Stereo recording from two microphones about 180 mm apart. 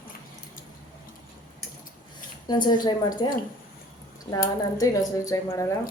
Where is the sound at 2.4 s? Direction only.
25° left (ahead or behind).